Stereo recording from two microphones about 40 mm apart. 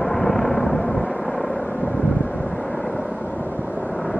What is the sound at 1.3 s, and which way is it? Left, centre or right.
Vehicle, left.